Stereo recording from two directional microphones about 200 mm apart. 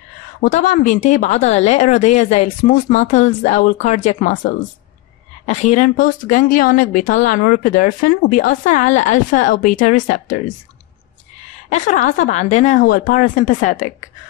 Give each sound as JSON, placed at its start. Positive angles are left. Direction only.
{"t": 0.4, "sound": "a woman's voice", "side_deg": 40}
{"t": 5.5, "sound": "a woman's voice", "side_deg": 35}
{"t": 11.7, "sound": "a woman's voice", "side_deg": 40}